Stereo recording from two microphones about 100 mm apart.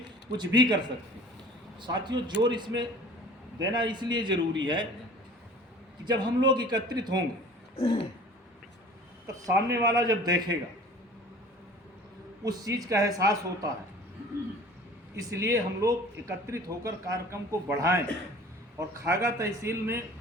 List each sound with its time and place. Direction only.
0.3 s a man's voice: 45° right (ahead or behind)
1.8 s a man's voice: 45° right (ahead or behind)
6.1 s a man's voice: 45° right (ahead or behind)
7.8 s a sound: 55° left (ahead or behind)
9.2 s a man's voice: 35° right (ahead or behind)
12.4 s a man's voice: 35° right (ahead or behind)
15.2 s a man's voice: 30° right (ahead or behind)